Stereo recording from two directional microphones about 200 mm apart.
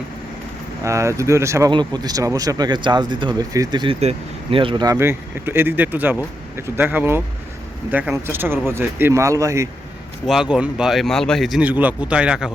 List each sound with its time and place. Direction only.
0.9 s speech: 15° right (ahead or behind)
10.2 s speech: 5° right (ahead or behind)